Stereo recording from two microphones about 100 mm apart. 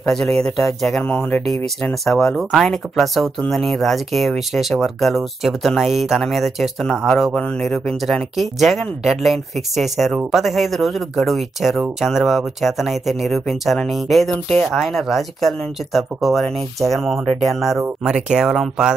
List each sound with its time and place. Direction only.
0.0 s speech: 5° left (ahead or behind)
1.0 s speech: 15° left (ahead or behind); by 18.9 s 5° right (ahead or behind)